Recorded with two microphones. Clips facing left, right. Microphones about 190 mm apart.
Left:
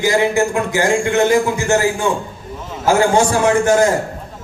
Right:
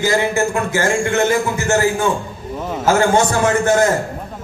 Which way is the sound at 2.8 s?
15° left (ahead or behind).